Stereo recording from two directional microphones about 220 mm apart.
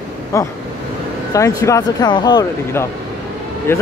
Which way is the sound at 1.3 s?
15° left (ahead or behind).